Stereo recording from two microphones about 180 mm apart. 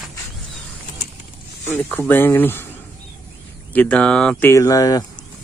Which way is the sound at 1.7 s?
10° left (ahead or behind).